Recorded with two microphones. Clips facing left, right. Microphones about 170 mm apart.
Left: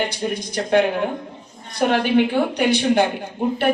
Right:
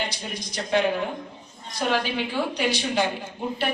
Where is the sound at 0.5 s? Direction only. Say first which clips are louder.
Left 4 dB; 55° left (ahead or behind).